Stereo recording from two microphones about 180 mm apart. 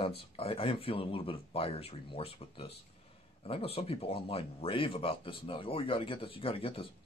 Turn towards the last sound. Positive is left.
turn(degrees=30)  # may be behind; listen again after turning